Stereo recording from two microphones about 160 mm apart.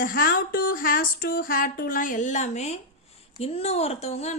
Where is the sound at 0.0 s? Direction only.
65° left (ahead or behind); by 2.7 s 45° left (ahead or behind).